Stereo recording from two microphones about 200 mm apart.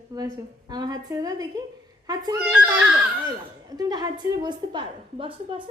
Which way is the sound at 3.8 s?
20° right (ahead or behind).